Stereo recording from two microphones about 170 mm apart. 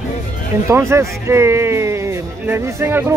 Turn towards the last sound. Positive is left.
turn(degrees=-15)  # may be behind; listen again after turning